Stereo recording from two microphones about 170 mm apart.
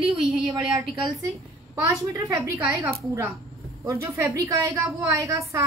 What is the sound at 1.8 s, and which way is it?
A woman's voice, 20° right (ahead or behind).